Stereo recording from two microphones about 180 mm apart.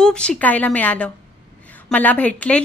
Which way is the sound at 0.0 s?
5° left (ahead or behind).